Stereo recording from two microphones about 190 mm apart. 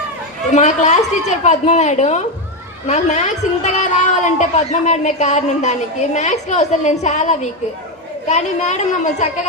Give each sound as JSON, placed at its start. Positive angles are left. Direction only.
{"t": 0.5, "sound": "a woman's voice", "side_deg": 40}